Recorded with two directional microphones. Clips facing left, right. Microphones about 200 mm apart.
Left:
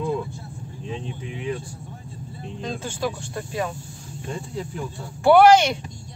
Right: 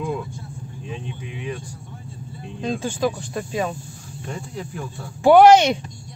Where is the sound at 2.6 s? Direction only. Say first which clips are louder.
Right 5 dB; 15° right (ahead or behind).